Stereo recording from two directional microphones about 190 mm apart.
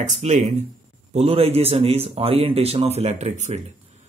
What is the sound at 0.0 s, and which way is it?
A man's voice, 40° right (ahead or behind).